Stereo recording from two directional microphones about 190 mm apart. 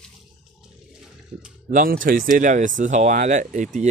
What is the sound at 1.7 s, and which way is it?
Speech, 45° right (ahead or behind).